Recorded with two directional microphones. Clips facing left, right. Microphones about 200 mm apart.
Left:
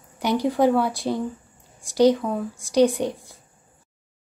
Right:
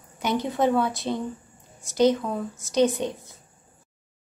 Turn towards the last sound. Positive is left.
turn(degrees=15)  # may be behind; listen again after turning